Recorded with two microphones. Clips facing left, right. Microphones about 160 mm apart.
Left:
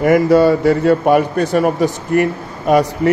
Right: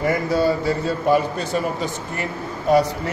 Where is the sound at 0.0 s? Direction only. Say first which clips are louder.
Left 9 dB; 65° left (ahead or behind).